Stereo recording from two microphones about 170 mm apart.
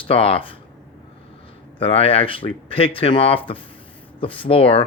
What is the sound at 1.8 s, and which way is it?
Speech, 35° left (ahead or behind).